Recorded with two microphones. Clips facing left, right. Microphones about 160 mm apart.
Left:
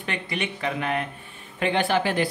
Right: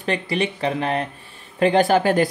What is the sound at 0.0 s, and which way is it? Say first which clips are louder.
Speech: right 7 dB; 35° right (ahead or behind).